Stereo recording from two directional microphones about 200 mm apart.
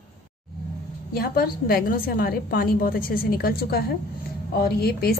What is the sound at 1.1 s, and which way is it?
A woman's voice, 50° left (ahead or behind).